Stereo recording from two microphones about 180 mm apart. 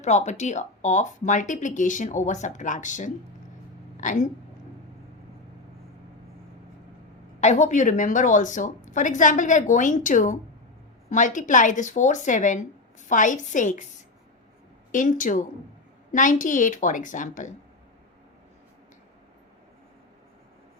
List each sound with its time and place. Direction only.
0.0 s speech: 40° left (ahead or behind)
7.4 s speech: 40° left (ahead or behind)
14.9 s speech: 45° left (ahead or behind)